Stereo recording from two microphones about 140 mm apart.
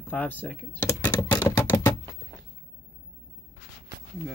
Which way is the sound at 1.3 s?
25° left (ahead or behind).